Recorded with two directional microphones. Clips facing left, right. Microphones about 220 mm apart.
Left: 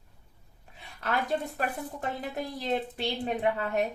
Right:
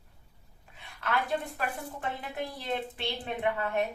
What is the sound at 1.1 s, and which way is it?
Speech, 40° left (ahead or behind).